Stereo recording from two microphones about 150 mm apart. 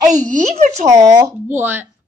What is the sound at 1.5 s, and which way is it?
Speech, 15° right (ahead or behind).